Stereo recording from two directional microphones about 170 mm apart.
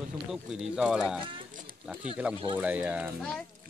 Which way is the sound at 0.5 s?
5° right (ahead or behind).